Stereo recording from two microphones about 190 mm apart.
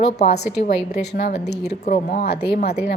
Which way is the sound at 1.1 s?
55° left (ahead or behind).